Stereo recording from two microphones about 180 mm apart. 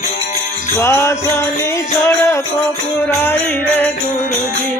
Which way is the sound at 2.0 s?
15° left (ahead or behind).